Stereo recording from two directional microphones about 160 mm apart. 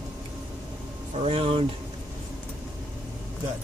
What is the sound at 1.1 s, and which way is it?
Speech, 40° right (ahead or behind).